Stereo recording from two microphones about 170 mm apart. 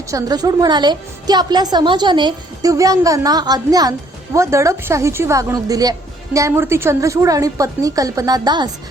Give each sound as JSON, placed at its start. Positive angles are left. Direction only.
{"t": 0.1, "sound": "a woman's voice", "side_deg": -20}